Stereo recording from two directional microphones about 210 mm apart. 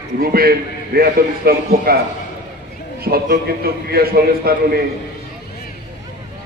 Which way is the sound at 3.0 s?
45° right (ahead or behind).